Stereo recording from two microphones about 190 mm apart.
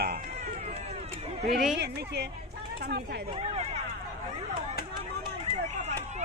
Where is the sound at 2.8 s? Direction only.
60° right (ahead or behind).